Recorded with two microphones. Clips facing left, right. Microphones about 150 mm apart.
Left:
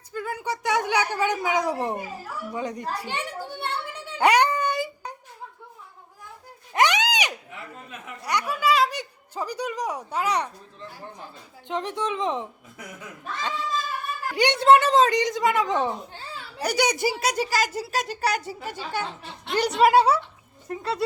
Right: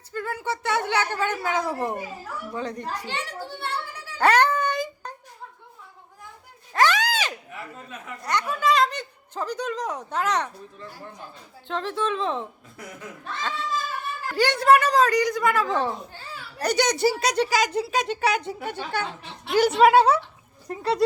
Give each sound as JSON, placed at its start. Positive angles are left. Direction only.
{"t": 0.1, "sound": "speech", "side_deg": 15}
{"t": 3.6, "sound": "a sound", "side_deg": 20}
{"t": 6.7, "sound": "a sound", "side_deg": 20}
{"t": 8.2, "sound": "a woman's voice", "side_deg": 10}
{"t": 11.7, "sound": "speech", "side_deg": 15}
{"t": 14.3, "sound": "a child's voice", "side_deg": 20}
{"t": 19.5, "sound": "speech", "side_deg": 0}
{"t": 20.7, "sound": "speech", "side_deg": -35}